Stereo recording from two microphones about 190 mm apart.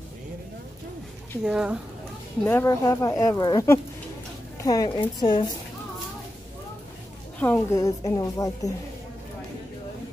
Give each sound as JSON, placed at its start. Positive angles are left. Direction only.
{"t": 1.4, "sound": "speech", "side_deg": -5}
{"t": 2.4, "sound": "a woman's voice", "side_deg": 15}
{"t": 7.3, "sound": "speech", "side_deg": 10}